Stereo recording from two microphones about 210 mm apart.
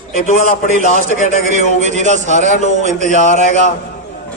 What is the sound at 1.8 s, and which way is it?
A man's voice, 35° right (ahead or behind).